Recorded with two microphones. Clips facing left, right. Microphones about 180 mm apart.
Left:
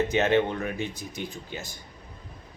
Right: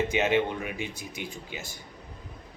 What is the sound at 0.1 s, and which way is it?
Speech, 10° right (ahead or behind).